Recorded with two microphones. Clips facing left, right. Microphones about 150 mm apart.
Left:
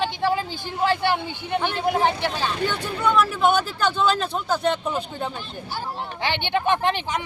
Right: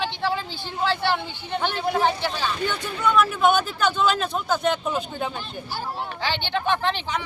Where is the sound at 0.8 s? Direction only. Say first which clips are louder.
Left 2 dB; 50° left (ahead or behind).